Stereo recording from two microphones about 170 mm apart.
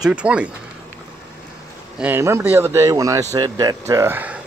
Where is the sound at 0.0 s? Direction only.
5° right (ahead or behind).